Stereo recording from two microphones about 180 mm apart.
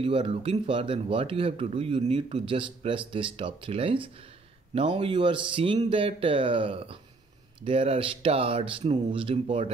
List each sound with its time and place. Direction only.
0.0 s speech: 30° right (ahead or behind)